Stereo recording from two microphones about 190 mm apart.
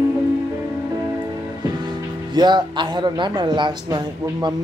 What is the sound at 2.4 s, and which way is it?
Speech, 25° right (ahead or behind).